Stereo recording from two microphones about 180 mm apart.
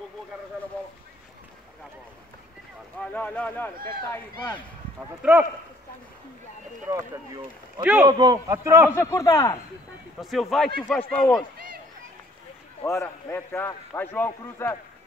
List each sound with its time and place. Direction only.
3.0 s a man's voice: 5° left (ahead or behind)
5.2 s a man's voice: 5° right (ahead or behind)
6.9 s speech: 20° right (ahead or behind)
7.8 s a man's voice: 5° right (ahead or behind)
8.1 s a man's voice: 20° right (ahead or behind)
8.9 s a man's voice: 15° left (ahead or behind)
10.2 s a man's voice: centre (ahead or behind)
11.5 s a sound: 55° right (ahead or behind)
12.8 s a man's voice: 15° left (ahead or behind)